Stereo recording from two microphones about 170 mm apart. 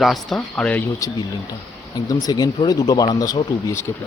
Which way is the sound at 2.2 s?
25° left (ahead or behind).